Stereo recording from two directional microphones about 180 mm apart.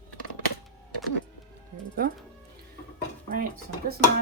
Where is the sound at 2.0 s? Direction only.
55° right (ahead or behind).